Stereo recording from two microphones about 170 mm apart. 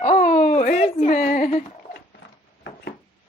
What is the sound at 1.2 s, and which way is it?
Speech, 50° left (ahead or behind).